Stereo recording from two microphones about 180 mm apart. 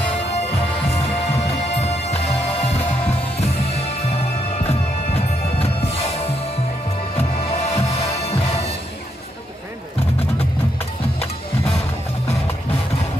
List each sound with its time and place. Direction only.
1.8 s music: 35° left (ahead or behind)